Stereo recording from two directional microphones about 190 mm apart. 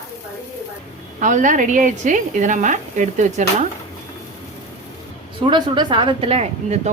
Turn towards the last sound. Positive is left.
turn(degrees=-35)  # may be behind; listen again after turning